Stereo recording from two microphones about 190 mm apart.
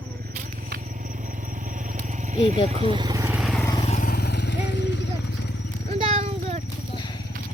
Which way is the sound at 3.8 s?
40° left (ahead or behind).